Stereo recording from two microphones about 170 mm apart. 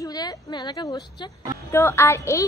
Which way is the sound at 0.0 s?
25° left (ahead or behind).